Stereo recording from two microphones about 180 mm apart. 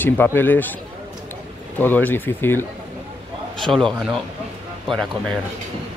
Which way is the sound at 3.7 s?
Centre (ahead or behind).